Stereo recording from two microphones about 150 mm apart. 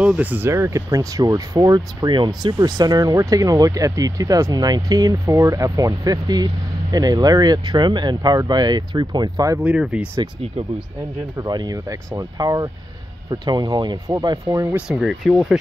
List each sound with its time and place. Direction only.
0.0 s speech: 10° right (ahead or behind); by 9.6 s 25° right (ahead or behind)
9.6 s speech: 5° right (ahead or behind)
11.3 s speech: 30° right (ahead or behind)
14.9 s speech: centre (ahead or behind)